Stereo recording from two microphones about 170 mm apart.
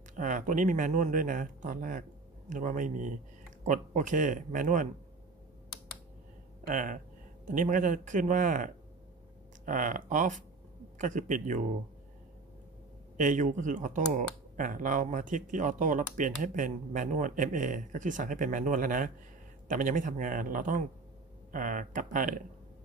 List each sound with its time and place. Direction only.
0.1 s speech: 50° right (ahead or behind)
6.6 s speech: 50° right (ahead or behind)
9.7 s speech: 50° right (ahead or behind)
13.2 s speech: 50° right (ahead or behind)